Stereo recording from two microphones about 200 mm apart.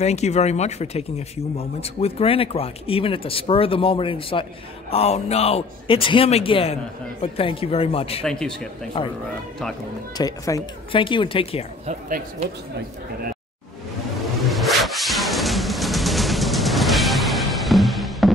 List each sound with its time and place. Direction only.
0.0 s a man's voice: 35° left (ahead or behind)
8.2 s a man's voice: 5° left (ahead or behind)
9.0 s a man's voice: 25° left (ahead or behind)
10.1 s a man's voice: 15° left (ahead or behind)
11.8 s speech: 35° right (ahead or behind)
14.5 s music: centre (ahead or behind)